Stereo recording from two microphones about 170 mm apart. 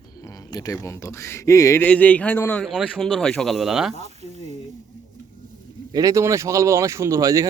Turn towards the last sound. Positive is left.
turn(degrees=-20)  # may be behind; listen again after turning